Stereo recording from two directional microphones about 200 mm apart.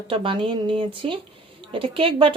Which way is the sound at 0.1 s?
25° right (ahead or behind).